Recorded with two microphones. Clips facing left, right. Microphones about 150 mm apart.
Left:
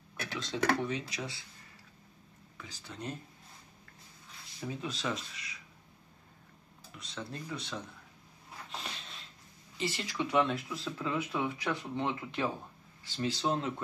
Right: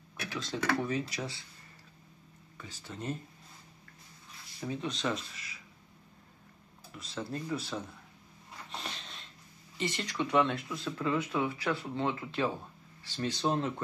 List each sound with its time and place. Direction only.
0.4 s speech: centre (ahead or behind)
2.5 s speech: centre (ahead or behind)
4.6 s speech: 5° left (ahead or behind)
7.0 s speech: centre (ahead or behind)
8.6 s a sound: centre (ahead or behind)
9.8 s speech: 5° left (ahead or behind)
11.3 s speech: 20° left (ahead or behind)
13.2 s speech: 5° left (ahead or behind)